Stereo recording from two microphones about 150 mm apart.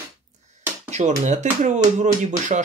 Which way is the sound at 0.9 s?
50° right (ahead or behind).